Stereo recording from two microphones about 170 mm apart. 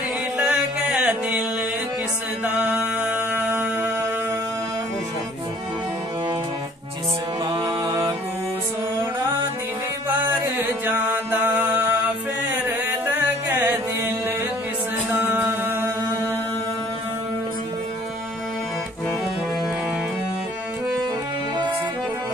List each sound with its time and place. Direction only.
0.4 s music: 10° right (ahead or behind)
2.4 s mantra: 10° right (ahead or behind)
7.4 s mantra: 20° right (ahead or behind)
10.0 s music: 10° right (ahead or behind)
15.1 s music: 10° right (ahead or behind)